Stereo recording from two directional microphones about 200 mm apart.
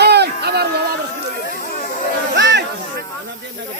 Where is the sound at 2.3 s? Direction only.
60° right (ahead or behind).